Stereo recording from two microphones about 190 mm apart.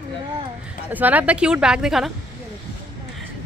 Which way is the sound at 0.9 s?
10° right (ahead or behind).